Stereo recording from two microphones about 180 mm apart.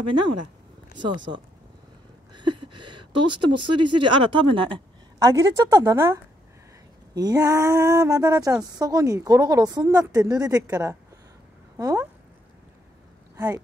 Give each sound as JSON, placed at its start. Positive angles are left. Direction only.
{"t": 0.9, "sound": "speech", "side_deg": -25}
{"t": 2.3, "sound": "speech", "side_deg": -25}